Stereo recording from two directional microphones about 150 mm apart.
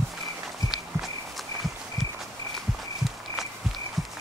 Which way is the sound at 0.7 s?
Centre (ahead or behind).